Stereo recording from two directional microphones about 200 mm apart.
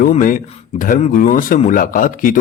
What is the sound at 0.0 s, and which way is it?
Speech, 40° left (ahead or behind).